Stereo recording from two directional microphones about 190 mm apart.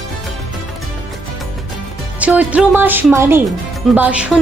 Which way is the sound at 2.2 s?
10° right (ahead or behind).